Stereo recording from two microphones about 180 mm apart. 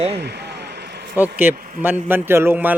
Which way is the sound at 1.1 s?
10° right (ahead or behind).